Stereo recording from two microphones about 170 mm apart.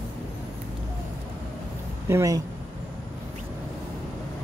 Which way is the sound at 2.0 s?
15° right (ahead or behind).